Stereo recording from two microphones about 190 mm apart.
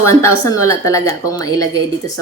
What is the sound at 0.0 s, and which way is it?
A woman's voice, 15° left (ahead or behind).